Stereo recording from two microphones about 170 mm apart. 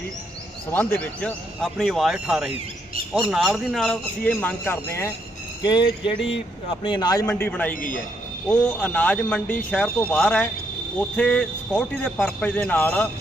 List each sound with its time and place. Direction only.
0.7 s speech: 10° left (ahead or behind)
5.6 s speech: 25° left (ahead or behind)
7.3 s speech: 10° left (ahead or behind)
7.7 s a man's voice: 55° left (ahead or behind)
8.4 s speech: 10° left (ahead or behind)